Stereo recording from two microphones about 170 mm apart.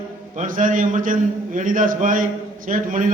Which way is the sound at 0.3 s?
50° right (ahead or behind).